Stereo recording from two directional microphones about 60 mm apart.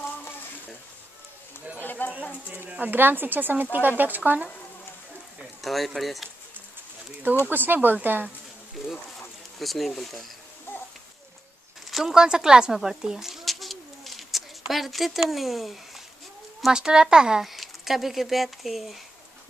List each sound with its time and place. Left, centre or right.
1.8 s a sound: left
2.4 s speech: right
5.6 s speech: centre
7.4 s speech: right
9.6 s speech: centre
11.9 s speech: centre
16.7 s speech: centre